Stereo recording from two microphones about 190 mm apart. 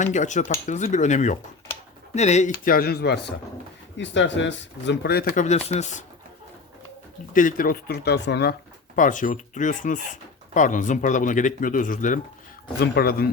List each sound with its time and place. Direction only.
0.0 s speech: 40° left (ahead or behind); by 3.3 s 60° left (ahead or behind)
3.9 s speech: 70° left (ahead or behind); by 6.1 s 35° left (ahead or behind)
7.3 s speech: 45° left (ahead or behind); by 8.5 s 60° left (ahead or behind)
9.0 s speech: 45° left (ahead or behind)
12.8 s speech: 55° left (ahead or behind)